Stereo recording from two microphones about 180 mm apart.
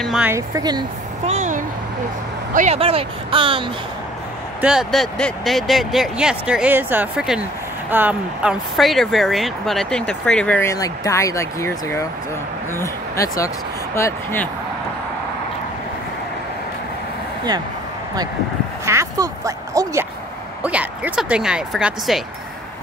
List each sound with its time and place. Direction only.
0.0 s speech: 5° right (ahead or behind)
0.3 s speech: 20° right (ahead or behind)
1.2 s speech: 40° right (ahead or behind)
4.6 s speech: 5° right (ahead or behind); by 14.5 s 15° left (ahead or behind)
18.9 s a sound: 15° right (ahead or behind)
20.6 s speech: 10° right (ahead or behind)